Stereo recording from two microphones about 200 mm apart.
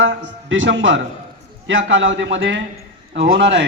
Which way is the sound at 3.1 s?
55° right (ahead or behind).